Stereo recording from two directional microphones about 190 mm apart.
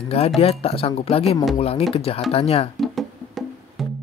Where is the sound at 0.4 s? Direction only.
30° left (ahead or behind).